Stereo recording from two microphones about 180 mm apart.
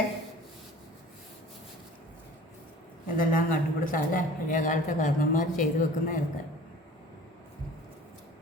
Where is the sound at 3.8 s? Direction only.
50° left (ahead or behind).